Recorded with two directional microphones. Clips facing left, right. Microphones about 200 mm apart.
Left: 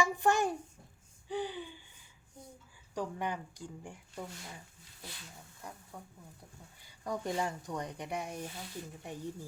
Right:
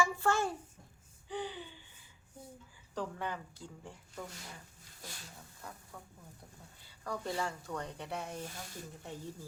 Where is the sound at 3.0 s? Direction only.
15° left (ahead or behind).